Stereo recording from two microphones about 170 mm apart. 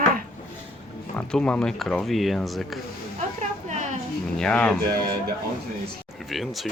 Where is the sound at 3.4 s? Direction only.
45° right (ahead or behind).